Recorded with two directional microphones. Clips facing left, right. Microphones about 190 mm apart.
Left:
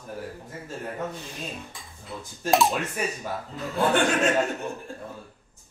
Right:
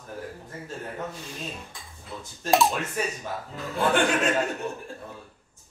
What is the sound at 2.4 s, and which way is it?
Speech, centre (ahead or behind).